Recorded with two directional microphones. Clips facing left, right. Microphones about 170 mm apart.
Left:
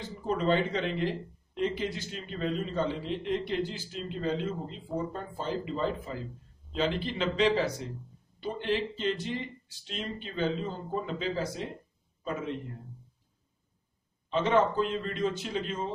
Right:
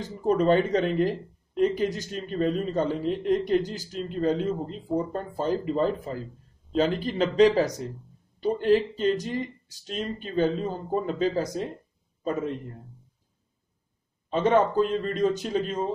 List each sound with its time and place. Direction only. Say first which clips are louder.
0.0 s a man's voice: right 7 dB; 45° right (ahead or behind)
14.3 s speech: right 4 dB; 45° right (ahead or behind)